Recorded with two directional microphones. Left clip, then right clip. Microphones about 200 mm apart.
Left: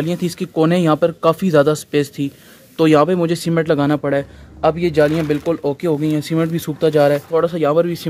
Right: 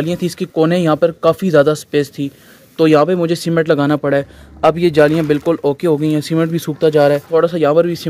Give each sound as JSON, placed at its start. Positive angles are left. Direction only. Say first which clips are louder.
{"t": 0.0, "sound": "speech", "louder": "right 3 dB", "side_deg": -10}
{"t": 4.6, "sound": "speech", "louder": "right 4 dB", "side_deg": -30}